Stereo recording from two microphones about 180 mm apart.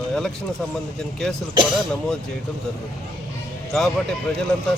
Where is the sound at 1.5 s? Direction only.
25° right (ahead or behind).